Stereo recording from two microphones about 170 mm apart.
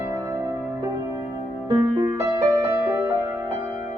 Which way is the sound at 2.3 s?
20° right (ahead or behind).